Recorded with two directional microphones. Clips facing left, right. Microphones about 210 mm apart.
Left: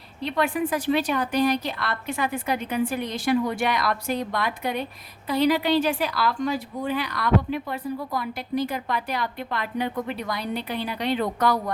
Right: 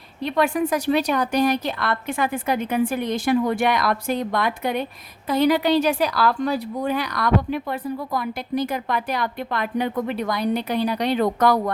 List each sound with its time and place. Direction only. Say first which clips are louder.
0.5 s a woman's voice: right 3 dB; 40° right (ahead or behind)